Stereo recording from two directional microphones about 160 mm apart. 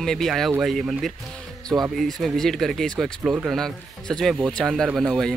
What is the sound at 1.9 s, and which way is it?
Speech, centre (ahead or behind).